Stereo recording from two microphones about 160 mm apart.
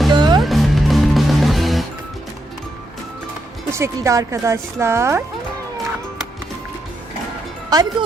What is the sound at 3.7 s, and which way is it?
Speech, 20° right (ahead or behind).